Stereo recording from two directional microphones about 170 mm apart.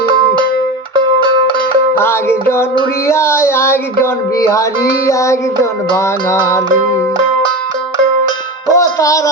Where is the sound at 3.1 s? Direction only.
15° left (ahead or behind).